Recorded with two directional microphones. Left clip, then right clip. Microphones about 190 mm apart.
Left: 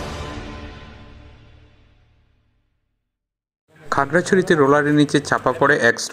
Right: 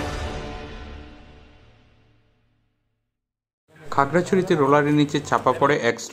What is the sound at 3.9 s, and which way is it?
Speech, 20° left (ahead or behind).